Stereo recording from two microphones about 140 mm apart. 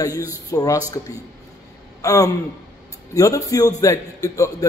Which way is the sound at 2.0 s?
25° left (ahead or behind).